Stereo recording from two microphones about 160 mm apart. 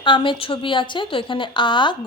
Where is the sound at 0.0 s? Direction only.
30° left (ahead or behind).